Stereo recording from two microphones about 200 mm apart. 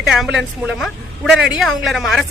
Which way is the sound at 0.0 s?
Centre (ahead or behind).